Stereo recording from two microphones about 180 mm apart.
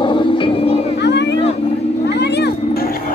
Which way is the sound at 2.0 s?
70° left (ahead or behind).